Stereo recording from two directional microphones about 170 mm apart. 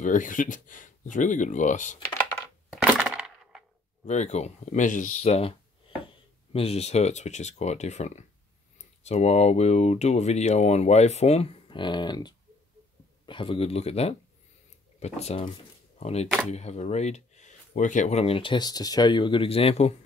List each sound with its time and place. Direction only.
0.0 s speech: 50° left (ahead or behind)
2.7 s crack: 10° right (ahead or behind)
4.0 s speech: 45° left (ahead or behind)
6.5 s speech: 35° left (ahead or behind)